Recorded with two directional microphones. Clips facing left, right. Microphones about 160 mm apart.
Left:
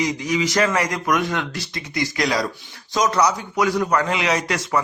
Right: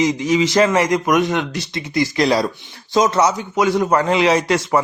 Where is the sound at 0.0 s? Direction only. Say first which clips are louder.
Right 5 dB; 25° right (ahead or behind).